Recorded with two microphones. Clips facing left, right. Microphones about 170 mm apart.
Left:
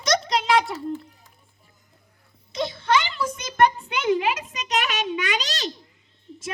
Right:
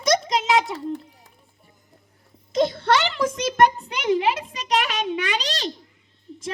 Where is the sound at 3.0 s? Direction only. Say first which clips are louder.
Right 5 dB; 75° right (ahead or behind).